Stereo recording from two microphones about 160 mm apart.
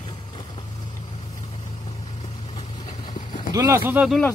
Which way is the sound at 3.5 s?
20° right (ahead or behind).